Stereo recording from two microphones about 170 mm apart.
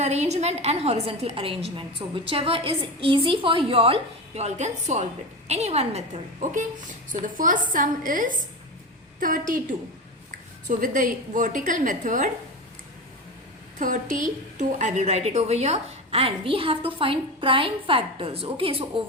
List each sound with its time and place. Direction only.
0.0 s a woman's voice: 40° right (ahead or behind)
10.7 s a woman's voice: 50° right (ahead or behind)
13.7 s a woman's voice: 50° right (ahead or behind); by 19.0 s 35° right (ahead or behind)